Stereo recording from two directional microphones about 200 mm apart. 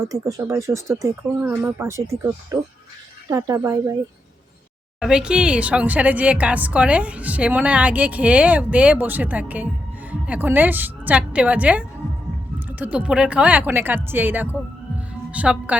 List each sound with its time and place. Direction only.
0.1 s a woman's voice: 20° right (ahead or behind)
4.9 s a woman's voice: 5° right (ahead or behind)